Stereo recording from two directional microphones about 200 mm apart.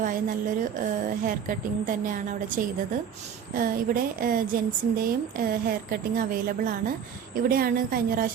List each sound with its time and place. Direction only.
0.0 s a woman's voice: 40° right (ahead or behind)